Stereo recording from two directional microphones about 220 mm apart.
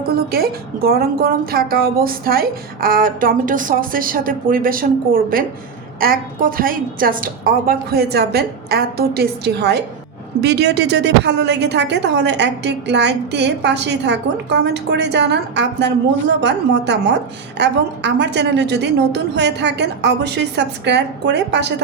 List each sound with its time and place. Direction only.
0.1 s a woman's voice: 45° right (ahead or behind)